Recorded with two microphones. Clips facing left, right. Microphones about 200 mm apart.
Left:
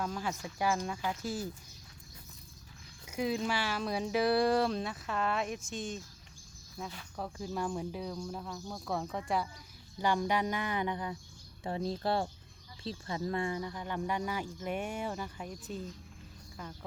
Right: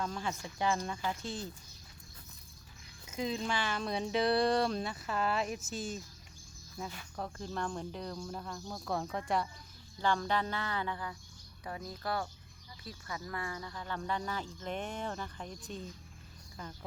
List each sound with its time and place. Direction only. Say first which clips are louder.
0.0 s speech: left 1 dB; 5° left (ahead or behind)
3.1 s speech: left 2 dB; 10° left (ahead or behind)
10.0 s speech: left 2 dB; 15° left (ahead or behind)